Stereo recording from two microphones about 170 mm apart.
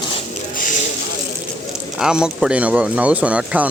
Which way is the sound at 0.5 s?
50° left (ahead or behind).